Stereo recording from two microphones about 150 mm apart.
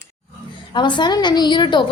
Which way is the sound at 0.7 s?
30° left (ahead or behind).